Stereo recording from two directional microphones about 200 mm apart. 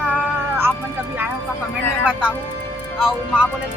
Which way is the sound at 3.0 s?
5° right (ahead or behind).